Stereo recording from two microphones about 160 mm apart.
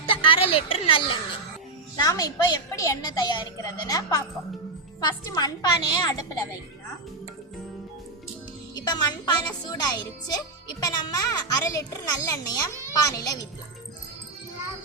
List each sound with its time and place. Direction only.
0.0 s a woman's voice: 30° left (ahead or behind)
2.0 s a child's voice: 20° left (ahead or behind)
8.7 s a child's voice: 25° left (ahead or behind)